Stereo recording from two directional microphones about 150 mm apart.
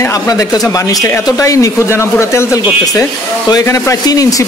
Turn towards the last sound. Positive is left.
turn(degrees=25)  # may be behind; listen again after turning